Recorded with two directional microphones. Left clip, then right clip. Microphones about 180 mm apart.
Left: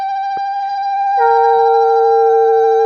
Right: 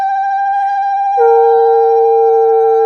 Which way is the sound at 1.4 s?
5° left (ahead or behind).